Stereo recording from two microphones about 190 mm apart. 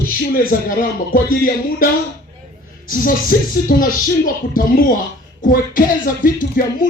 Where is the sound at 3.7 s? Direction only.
45° left (ahead or behind).